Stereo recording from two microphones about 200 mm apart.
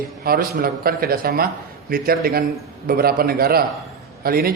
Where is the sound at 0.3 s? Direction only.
50° right (ahead or behind).